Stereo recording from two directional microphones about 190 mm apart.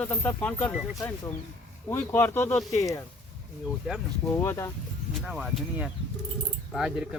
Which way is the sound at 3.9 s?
Centre (ahead or behind).